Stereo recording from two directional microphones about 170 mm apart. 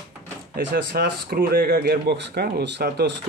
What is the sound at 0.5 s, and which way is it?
Speech, 60° right (ahead or behind).